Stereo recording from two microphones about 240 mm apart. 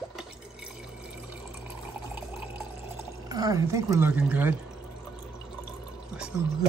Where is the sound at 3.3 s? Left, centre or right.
Centre.